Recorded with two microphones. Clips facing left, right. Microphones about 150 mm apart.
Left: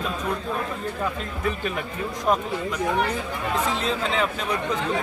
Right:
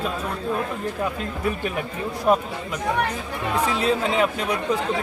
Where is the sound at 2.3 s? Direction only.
5° right (ahead or behind).